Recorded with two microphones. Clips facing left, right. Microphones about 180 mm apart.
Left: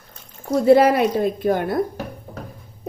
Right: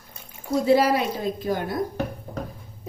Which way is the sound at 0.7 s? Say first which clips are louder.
Left 6 dB; 55° left (ahead or behind).